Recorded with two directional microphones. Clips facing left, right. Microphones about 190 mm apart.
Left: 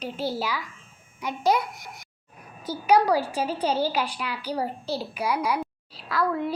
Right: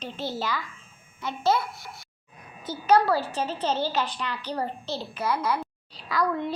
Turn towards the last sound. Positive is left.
turn(degrees=5)  # may be behind; listen again after turning